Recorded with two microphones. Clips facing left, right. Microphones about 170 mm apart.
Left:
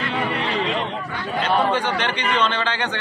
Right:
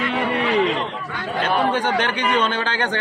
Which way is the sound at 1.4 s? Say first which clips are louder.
Even; 50° right (ahead or behind).